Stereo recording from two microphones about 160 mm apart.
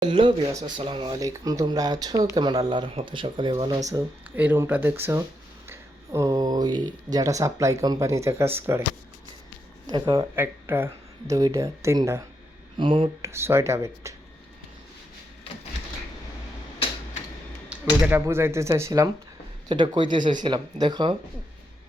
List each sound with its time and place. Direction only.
0.0 s a sound: 30° right (ahead or behind)
0.8 s speech: 35° right (ahead or behind)
1.1 s speech: 20° right (ahead or behind)
4.4 s speech: 10° right (ahead or behind)
9.8 s speech: 25° right (ahead or behind)
12.7 s speech: 30° right (ahead or behind)
13.2 s speech: 15° right (ahead or behind)
18.0 s speech: 15° right (ahead or behind)